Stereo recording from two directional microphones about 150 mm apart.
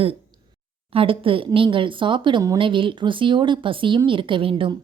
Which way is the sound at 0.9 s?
35° right (ahead or behind).